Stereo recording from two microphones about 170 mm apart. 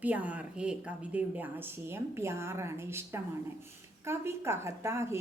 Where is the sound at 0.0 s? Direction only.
10° right (ahead or behind).